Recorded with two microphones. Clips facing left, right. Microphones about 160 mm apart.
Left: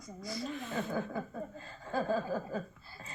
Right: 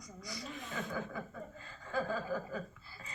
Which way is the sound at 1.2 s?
40° left (ahead or behind).